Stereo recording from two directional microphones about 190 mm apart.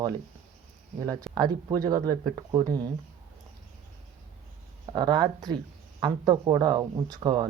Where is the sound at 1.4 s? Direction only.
20° right (ahead or behind).